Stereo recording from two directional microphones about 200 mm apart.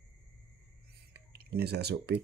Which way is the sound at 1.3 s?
50° right (ahead or behind).